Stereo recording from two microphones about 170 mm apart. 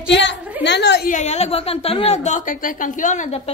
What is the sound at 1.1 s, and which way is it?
A woman's voice, 40° left (ahead or behind).